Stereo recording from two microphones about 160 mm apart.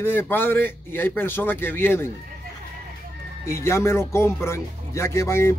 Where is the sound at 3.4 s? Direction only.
15° left (ahead or behind).